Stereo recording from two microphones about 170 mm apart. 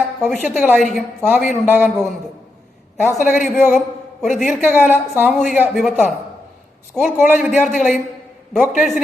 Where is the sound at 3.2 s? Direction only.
45° left (ahead or behind).